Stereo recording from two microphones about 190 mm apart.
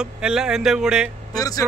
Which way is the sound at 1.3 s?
20° left (ahead or behind).